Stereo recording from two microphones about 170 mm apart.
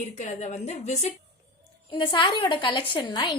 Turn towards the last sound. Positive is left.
turn(degrees=25)  # may be behind; listen again after turning